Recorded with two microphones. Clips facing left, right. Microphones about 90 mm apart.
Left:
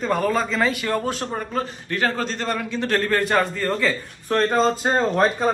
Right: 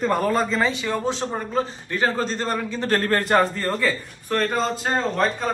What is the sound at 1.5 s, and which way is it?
A man's voice, 30° right (ahead or behind).